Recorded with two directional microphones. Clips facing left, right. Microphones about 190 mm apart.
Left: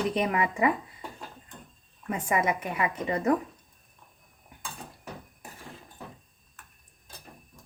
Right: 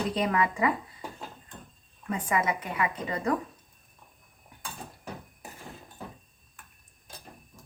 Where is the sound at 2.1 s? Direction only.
25° left (ahead or behind).